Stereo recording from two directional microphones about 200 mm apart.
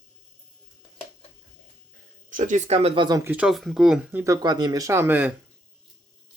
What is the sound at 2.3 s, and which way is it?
Speech, 40° right (ahead or behind).